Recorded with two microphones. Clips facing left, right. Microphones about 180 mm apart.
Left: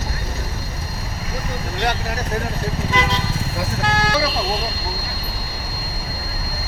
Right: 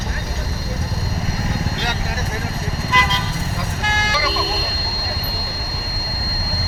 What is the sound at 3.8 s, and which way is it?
Vehicle, 65° left (ahead or behind).